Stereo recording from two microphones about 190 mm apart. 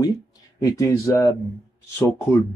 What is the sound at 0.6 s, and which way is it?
Speech, 20° left (ahead or behind).